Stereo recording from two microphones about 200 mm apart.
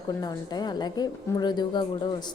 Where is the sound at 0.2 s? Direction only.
20° left (ahead or behind).